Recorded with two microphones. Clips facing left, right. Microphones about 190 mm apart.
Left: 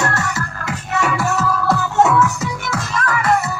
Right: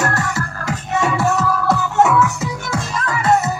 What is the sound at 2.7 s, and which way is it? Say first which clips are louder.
Music: left 2 dB; 25° right (ahead or behind).